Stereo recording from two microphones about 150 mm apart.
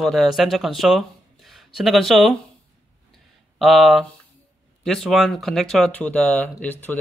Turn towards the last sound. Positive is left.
turn(degrees=10)  # may be behind; listen again after turning